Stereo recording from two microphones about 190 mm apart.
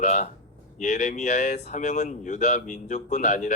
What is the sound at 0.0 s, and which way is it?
Speech, 40° left (ahead or behind).